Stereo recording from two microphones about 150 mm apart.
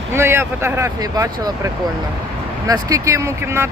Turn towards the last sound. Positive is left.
turn(degrees=-20)  # may be behind; listen again after turning